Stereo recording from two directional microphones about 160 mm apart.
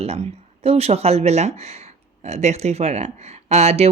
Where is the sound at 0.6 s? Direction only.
40° right (ahead or behind).